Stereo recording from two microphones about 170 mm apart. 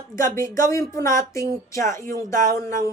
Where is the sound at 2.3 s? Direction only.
50° right (ahead or behind).